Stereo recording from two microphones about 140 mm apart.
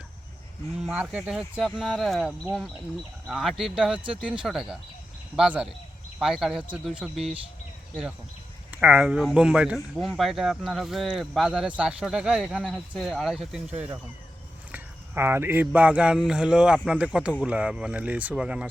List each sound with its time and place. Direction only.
0.8 s speech: 5° right (ahead or behind)
8.7 s speech: 10° right (ahead or behind)
14.7 s a sound: 15° right (ahead or behind)
15.6 s speech: 10° right (ahead or behind)